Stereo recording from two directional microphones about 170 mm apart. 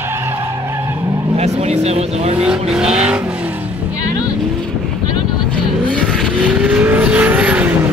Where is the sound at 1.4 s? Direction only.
40° right (ahead or behind).